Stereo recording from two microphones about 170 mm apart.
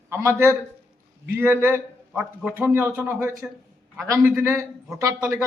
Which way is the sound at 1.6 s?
10° right (ahead or behind).